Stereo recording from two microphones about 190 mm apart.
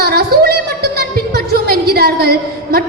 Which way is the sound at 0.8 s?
60° right (ahead or behind).